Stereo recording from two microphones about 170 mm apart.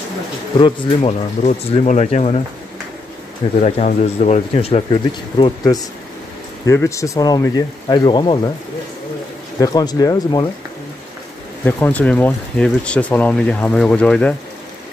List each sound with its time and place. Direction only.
0.6 s speech: 30° left (ahead or behind)
3.6 s speech: 45° left (ahead or behind); by 8.4 s 25° left (ahead or behind)
9.6 s speech: 20° left (ahead or behind)
11.6 s speech: 10° left (ahead or behind)